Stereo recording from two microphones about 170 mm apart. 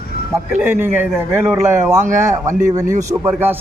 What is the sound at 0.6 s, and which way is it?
A man's voice, 15° right (ahead or behind).